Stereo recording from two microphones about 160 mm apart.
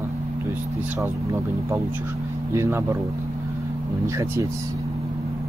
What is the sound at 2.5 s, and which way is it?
Speech, 15° right (ahead or behind).